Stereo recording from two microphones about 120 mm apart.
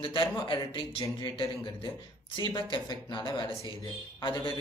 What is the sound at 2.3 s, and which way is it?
A man's voice, 40° left (ahead or behind).